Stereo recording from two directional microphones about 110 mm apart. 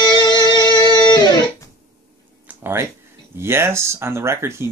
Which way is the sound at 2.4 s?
20° right (ahead or behind).